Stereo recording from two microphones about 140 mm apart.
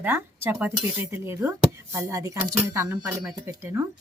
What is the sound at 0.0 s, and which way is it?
Speech, 15° right (ahead or behind).